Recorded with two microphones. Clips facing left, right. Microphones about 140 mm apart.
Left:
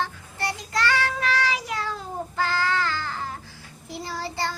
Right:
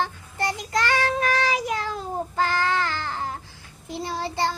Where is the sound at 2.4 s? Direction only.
20° right (ahead or behind).